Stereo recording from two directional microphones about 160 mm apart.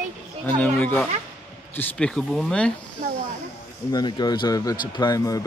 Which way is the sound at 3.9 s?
25° left (ahead or behind).